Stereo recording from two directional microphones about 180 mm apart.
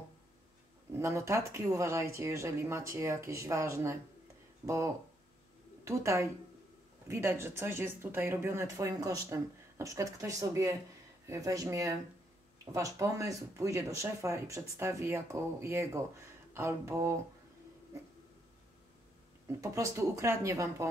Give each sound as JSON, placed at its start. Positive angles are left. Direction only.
{"t": 0.9, "sound": "speech", "side_deg": -15}
{"t": 5.9, "sound": "speech", "side_deg": -15}
{"t": 19.4, "sound": "speech", "side_deg": -15}